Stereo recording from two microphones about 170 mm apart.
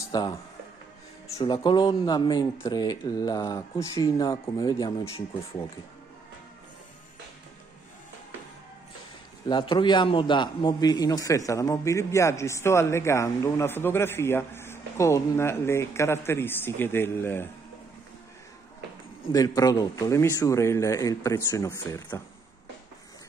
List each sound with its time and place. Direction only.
0.1 s speech: 25° left (ahead or behind)
9.5 s a man's voice: 30° left (ahead or behind); by 17.5 s 15° left (ahead or behind)
19.3 s speech: 20° left (ahead or behind)